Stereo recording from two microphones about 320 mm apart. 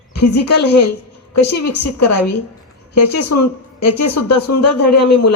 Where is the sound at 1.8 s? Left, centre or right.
Left.